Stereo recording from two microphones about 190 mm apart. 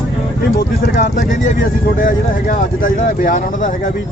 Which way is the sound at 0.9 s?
50° left (ahead or behind).